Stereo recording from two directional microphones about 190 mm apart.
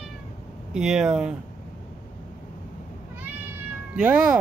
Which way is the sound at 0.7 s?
5° right (ahead or behind).